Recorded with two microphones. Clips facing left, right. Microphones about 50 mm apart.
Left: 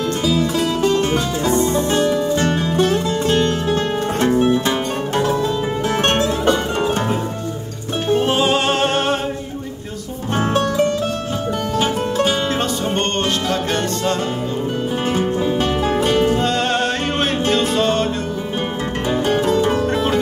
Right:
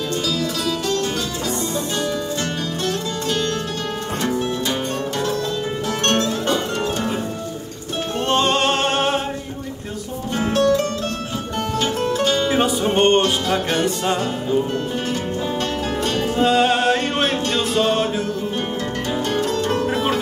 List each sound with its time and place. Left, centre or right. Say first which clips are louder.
0.2 s music: left 5 dB; left
8.3 s music: left 1 dB; centre
10.5 s music: right 1 dB; centre
12.4 s music: right 2 dB; centre
15.9 s music: left 7 dB; centre
16.3 s music: right 2 dB; centre
19.0 s music: left 5 dB; centre